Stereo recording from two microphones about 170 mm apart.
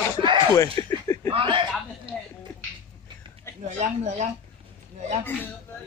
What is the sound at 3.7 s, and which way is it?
Speech, 40° right (ahead or behind).